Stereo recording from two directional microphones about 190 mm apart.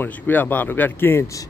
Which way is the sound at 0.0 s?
10° left (ahead or behind).